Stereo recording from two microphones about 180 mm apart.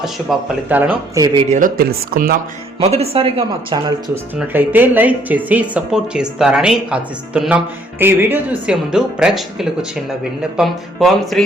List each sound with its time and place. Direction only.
0.0 s speech: 5° right (ahead or behind); by 1.5 s 20° right (ahead or behind)
1.5 s speech: 45° right (ahead or behind)
2.8 s speech: 35° right (ahead or behind)
4.1 s speech: 10° right (ahead or behind)